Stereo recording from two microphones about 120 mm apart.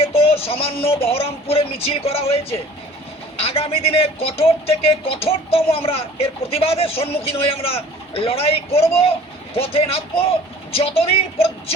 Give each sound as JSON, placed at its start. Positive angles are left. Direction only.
{"t": 0.0, "sound": "speech", "side_deg": 55}